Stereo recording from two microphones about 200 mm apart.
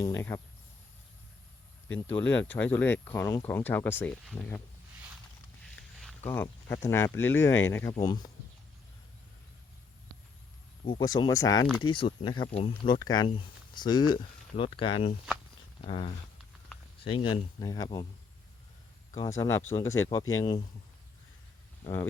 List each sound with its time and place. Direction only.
0.0 s speech: 10° left (ahead or behind)
2.0 s speech: 10° left (ahead or behind)
6.0 s a sound: 5° left (ahead or behind)
6.8 s speech: 15° left (ahead or behind)
10.8 s speech: 20° left (ahead or behind)
19.1 s speech: 15° left (ahead or behind)